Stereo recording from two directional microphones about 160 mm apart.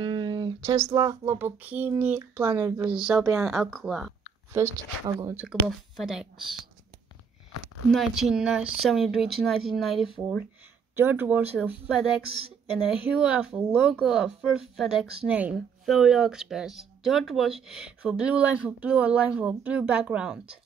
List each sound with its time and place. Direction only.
0.0 s a sound: 30° right (ahead or behind)
0.9 s speech: 20° right (ahead or behind); by 4.1 s centre (ahead or behind)
4.5 s speech: 15° right (ahead or behind)
5.4 s speech: centre (ahead or behind)
7.9 s speech: centre (ahead or behind)
11.0 s speech: 10° right (ahead or behind)